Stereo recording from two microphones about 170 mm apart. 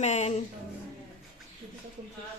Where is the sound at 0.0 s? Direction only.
40° left (ahead or behind).